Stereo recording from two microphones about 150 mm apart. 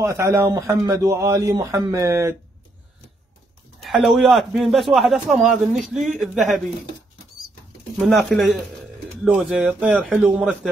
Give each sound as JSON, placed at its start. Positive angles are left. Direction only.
{"t": 0.0, "sound": "speech", "side_deg": -20}
{"t": 3.8, "sound": "a man's voice", "side_deg": 0}
{"t": 8.0, "sound": "a man's voice", "side_deg": 0}
{"t": 9.4, "sound": "a man's voice", "side_deg": 0}